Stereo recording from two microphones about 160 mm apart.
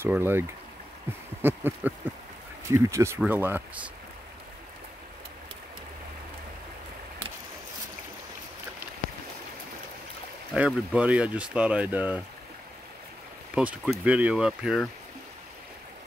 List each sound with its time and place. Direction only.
0.0 s speech: 15° right (ahead or behind)
10.5 s speech: 5° right (ahead or behind)
13.6 s speech: 10° right (ahead or behind)